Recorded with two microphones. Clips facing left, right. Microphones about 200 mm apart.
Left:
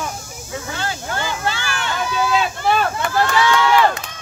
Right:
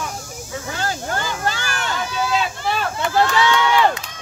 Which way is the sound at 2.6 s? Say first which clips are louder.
Left 4 dB; 55° left (ahead or behind).